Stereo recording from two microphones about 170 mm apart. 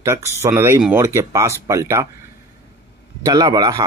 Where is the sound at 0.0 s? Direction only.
15° right (ahead or behind).